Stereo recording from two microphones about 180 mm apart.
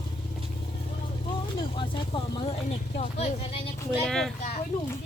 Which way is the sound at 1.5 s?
25° left (ahead or behind).